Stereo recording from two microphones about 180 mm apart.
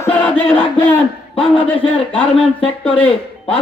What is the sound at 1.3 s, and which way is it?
Speech, 30° left (ahead or behind).